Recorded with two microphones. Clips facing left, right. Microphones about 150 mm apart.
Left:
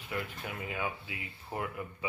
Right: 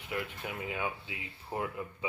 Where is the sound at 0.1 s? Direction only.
20° right (ahead or behind).